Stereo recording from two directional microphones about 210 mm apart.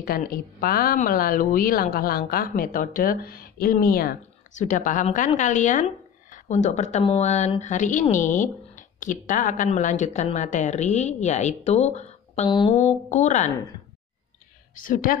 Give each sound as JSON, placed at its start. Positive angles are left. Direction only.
{"t": 0.0, "sound": "a woman's voice", "side_deg": 45}
{"t": 12.7, "sound": "speech", "side_deg": 35}
{"t": 14.8, "sound": "speech", "side_deg": 40}